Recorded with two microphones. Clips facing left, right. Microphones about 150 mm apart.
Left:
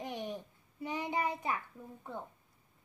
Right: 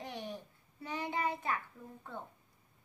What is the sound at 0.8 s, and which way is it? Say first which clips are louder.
Child singing: left 1 dB; 15° left (ahead or behind).